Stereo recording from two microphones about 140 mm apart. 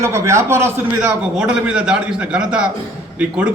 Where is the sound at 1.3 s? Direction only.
5° right (ahead or behind).